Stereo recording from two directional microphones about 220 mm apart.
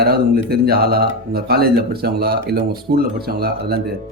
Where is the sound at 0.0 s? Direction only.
45° right (ahead or behind).